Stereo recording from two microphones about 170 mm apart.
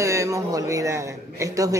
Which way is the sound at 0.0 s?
15° right (ahead or behind).